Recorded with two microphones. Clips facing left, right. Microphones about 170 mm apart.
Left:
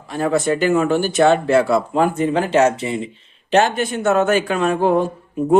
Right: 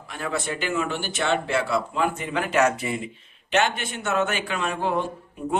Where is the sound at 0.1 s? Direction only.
40° left (ahead or behind).